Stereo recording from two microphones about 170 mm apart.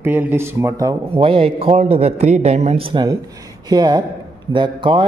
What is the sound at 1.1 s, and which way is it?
A man's voice, 35° right (ahead or behind).